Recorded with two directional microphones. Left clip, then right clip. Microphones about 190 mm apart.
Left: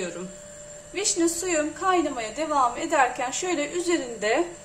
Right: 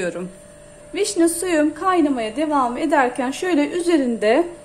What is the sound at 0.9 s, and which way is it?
A woman's voice, 45° right (ahead or behind).